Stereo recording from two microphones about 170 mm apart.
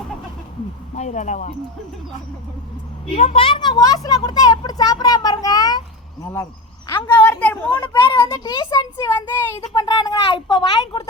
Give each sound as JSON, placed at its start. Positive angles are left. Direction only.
{"t": 0.9, "sound": "speech", "side_deg": 45}
{"t": 3.2, "sound": "a man's voice", "side_deg": 35}
{"t": 7.8, "sound": "speech", "side_deg": 25}